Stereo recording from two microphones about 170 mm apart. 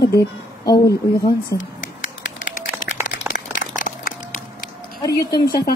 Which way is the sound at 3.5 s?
55° left (ahead or behind).